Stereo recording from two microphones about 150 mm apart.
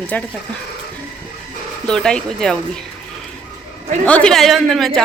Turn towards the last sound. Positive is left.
turn(degrees=0)  # may be behind; listen again after turning